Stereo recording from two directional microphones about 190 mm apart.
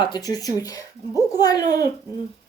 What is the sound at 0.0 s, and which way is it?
Speech, 20° left (ahead or behind).